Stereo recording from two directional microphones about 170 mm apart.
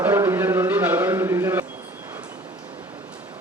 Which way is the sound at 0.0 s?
15° right (ahead or behind).